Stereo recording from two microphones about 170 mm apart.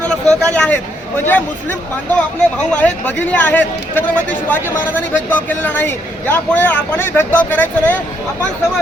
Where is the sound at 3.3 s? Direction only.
10° left (ahead or behind).